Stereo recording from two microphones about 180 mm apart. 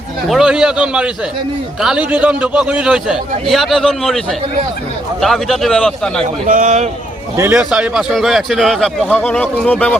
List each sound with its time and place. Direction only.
0.3 s a man's voice: centre (ahead or behind)
6.2 s a man's voice: 45° right (ahead or behind)
7.5 s a man's voice: 5° right (ahead or behind)